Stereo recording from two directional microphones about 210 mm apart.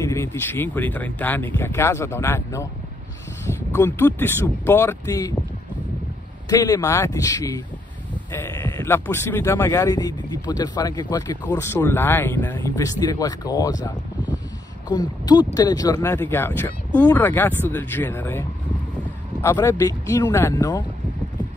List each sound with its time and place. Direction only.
0.0 s speech: 15° left (ahead or behind)
6.5 s speech: 15° left (ahead or behind)
8.7 s speech: 10° left (ahead or behind)
19.4 s speech: 15° left (ahead or behind)